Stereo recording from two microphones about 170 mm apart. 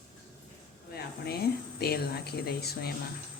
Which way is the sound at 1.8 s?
70° left (ahead or behind).